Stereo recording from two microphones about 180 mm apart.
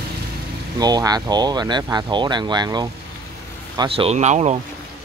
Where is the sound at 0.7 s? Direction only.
20° right (ahead or behind); by 4.6 s 40° right (ahead or behind).